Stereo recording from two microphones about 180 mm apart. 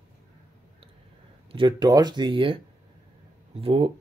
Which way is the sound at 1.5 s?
25° right (ahead or behind).